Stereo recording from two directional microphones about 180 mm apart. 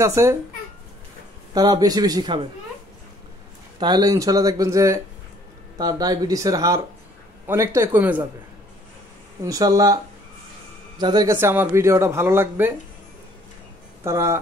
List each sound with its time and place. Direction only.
0.0 s speech: 15° right (ahead or behind)
1.5 s speech: 20° right (ahead or behind)
3.8 s speech: 20° right (ahead or behind)
9.4 s speech: 20° right (ahead or behind)
11.0 s speech: 25° right (ahead or behind)
11.3 s speech: 10° right (ahead or behind)
14.0 s speech: 15° right (ahead or behind)